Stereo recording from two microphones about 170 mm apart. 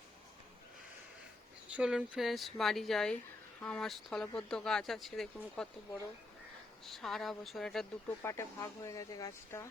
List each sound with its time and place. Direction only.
1.7 s speech: 5° right (ahead or behind)
8.2 s speech: 15° left (ahead or behind)